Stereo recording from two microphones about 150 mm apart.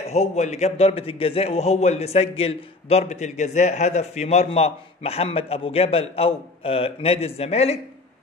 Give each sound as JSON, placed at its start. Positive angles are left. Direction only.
{"t": 0.0, "sound": "a man's voice", "side_deg": 50}